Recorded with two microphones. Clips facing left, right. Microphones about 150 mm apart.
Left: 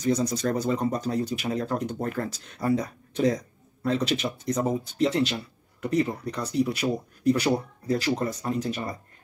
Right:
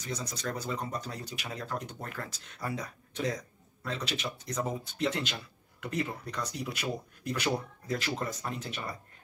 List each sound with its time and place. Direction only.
0.0 s speech: 40° left (ahead or behind)